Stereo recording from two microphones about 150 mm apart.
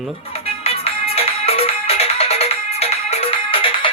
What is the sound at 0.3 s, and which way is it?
Music, 40° left (ahead or behind).